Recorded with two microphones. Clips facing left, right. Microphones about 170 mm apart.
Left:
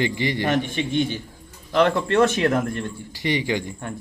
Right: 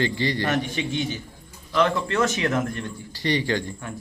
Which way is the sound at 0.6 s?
50° left (ahead or behind).